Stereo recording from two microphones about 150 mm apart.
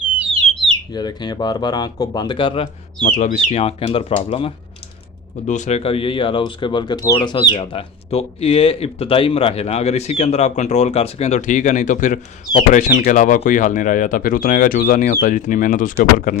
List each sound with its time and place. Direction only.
0.9 s speech: 30° left (ahead or behind)
3.0 s speech: 60° left (ahead or behind); by 4.5 s 40° left (ahead or behind)
5.5 s speech: 50° left (ahead or behind)